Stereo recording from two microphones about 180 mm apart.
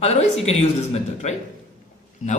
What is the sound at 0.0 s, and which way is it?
Speech, 35° left (ahead or behind).